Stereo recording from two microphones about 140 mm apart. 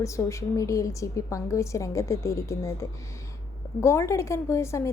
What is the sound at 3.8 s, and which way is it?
A woman's voice, 20° left (ahead or behind).